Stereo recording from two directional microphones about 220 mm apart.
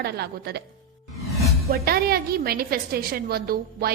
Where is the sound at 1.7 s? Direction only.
45° right (ahead or behind).